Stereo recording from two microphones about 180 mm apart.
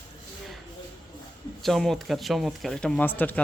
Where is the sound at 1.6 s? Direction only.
Centre (ahead or behind).